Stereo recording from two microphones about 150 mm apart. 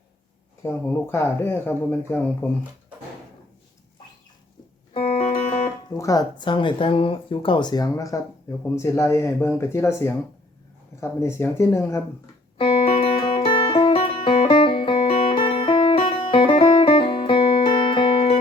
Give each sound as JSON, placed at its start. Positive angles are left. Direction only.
{"t": 0.6, "sound": "speech", "side_deg": 15}
{"t": 4.9, "sound": "music", "side_deg": 50}
{"t": 5.9, "sound": "speech", "side_deg": 25}
{"t": 12.5, "sound": "music", "side_deg": 35}